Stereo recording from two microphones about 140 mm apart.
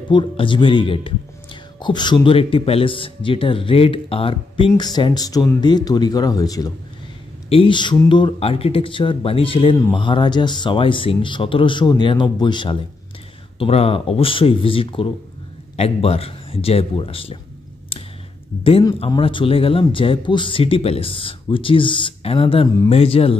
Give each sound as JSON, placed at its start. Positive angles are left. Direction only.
{"t": 0.1, "sound": "speech", "side_deg": 35}
{"t": 4.7, "sound": "speech", "side_deg": 30}
{"t": 7.4, "sound": "speech", "side_deg": 40}
{"t": 13.6, "sound": "a man's voice", "side_deg": 45}
{"t": 18.6, "sound": "a man's voice", "side_deg": 40}